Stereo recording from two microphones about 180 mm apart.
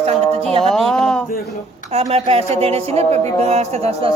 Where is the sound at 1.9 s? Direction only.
35° right (ahead or behind).